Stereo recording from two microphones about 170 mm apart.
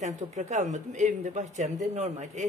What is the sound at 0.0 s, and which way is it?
Speech, 45° right (ahead or behind).